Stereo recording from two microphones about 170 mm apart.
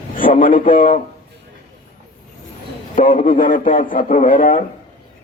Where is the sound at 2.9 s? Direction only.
50° left (ahead or behind).